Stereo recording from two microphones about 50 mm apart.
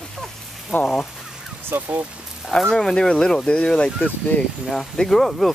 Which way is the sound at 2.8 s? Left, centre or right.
Centre.